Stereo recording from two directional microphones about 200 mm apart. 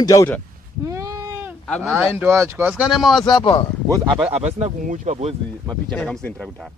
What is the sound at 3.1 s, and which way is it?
Speech, 20° left (ahead or behind).